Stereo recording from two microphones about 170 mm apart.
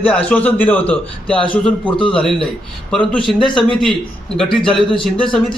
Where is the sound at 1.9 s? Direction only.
30° left (ahead or behind).